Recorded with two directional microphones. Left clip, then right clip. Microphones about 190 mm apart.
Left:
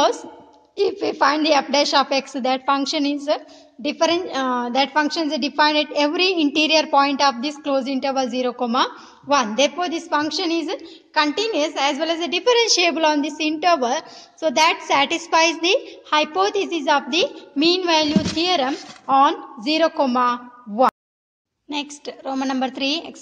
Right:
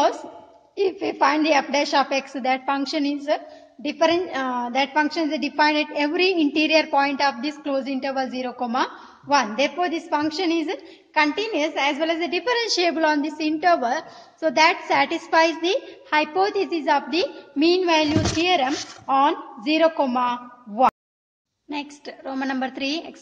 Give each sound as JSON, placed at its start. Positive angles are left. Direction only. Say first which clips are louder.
{"t": 0.7, "sound": "a woman's voice", "louder": "left 2 dB", "side_deg": 35}